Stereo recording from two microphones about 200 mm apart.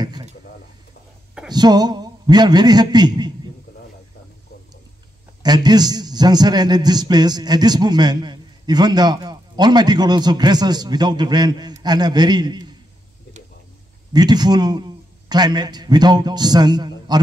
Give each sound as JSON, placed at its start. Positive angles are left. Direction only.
{"t": 0.0, "sound": "a sound", "side_deg": -20}
{"t": 1.5, "sound": "a man's voice", "side_deg": -20}
{"t": 5.4, "sound": "a man's voice", "side_deg": -20}
{"t": 14.1, "sound": "a man's voice", "side_deg": -20}